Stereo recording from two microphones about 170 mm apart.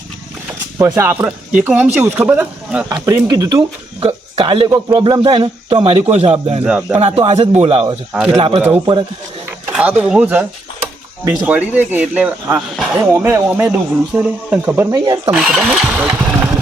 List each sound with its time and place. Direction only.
0.8 s speech: 15° right (ahead or behind)
4.0 s speech: 35° right (ahead or behind)
8.1 s speech: 5° right (ahead or behind)
8.4 s speech: 35° right (ahead or behind)
9.5 s a sound: 10° right (ahead or behind)
10.0 s speech: 5° right (ahead or behind)
14.9 s speech: 25° right (ahead or behind)
15.4 s speech: 5° right (ahead or behind)